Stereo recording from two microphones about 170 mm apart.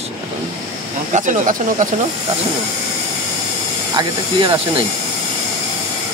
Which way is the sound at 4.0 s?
30° right (ahead or behind).